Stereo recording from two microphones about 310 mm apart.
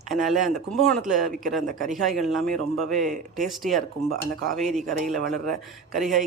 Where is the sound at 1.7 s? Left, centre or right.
Right.